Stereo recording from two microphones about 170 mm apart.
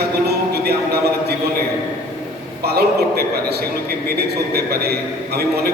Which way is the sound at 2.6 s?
70° right (ahead or behind).